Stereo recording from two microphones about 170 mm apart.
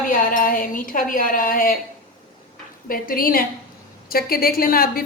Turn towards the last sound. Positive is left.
turn(degrees=60)  # may be behind; listen again after turning